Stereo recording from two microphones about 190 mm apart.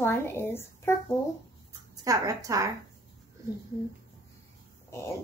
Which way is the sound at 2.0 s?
15° right (ahead or behind).